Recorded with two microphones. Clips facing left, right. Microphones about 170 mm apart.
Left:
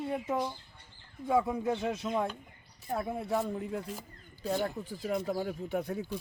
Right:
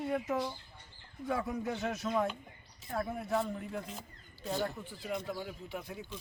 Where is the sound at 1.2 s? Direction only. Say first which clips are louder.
Left 6 dB; 25° left (ahead or behind).